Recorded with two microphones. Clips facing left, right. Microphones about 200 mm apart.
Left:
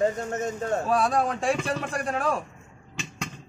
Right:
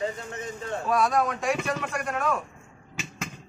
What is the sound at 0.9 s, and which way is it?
Speech, 30° left (ahead or behind).